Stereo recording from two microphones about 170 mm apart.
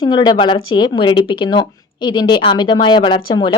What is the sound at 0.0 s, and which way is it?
Speech, 25° left (ahead or behind).